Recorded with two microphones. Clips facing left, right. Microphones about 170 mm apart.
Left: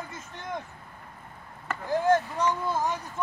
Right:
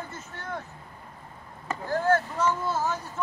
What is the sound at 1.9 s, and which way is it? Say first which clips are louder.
Speech: left 1 dB; 15° left (ahead or behind).